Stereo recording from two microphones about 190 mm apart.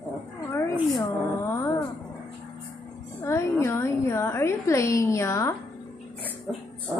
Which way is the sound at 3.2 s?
15° left (ahead or behind).